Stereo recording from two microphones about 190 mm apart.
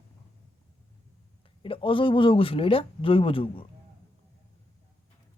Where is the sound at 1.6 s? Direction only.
25° left (ahead or behind).